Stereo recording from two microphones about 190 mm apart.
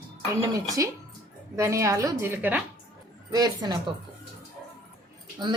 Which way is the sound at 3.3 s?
20° right (ahead or behind).